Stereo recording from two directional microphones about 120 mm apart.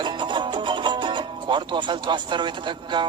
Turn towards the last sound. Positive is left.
turn(degrees=-40)  # may be behind; listen again after turning